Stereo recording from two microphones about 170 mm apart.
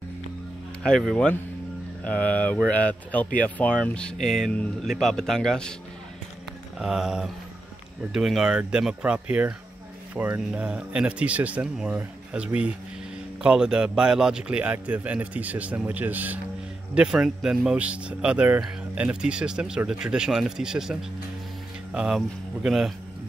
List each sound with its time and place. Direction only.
0.8 s speech: 5° left (ahead or behind)
6.8 s speech: 5° right (ahead or behind)